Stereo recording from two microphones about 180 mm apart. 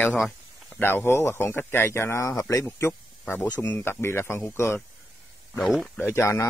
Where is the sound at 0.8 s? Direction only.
10° left (ahead or behind).